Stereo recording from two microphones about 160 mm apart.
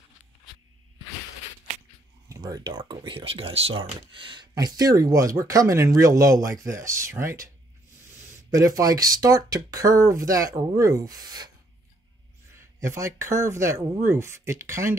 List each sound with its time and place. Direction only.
2.2 s speech: 20° right (ahead or behind)
8.5 s speech: 20° right (ahead or behind)
12.5 s speech: 15° right (ahead or behind)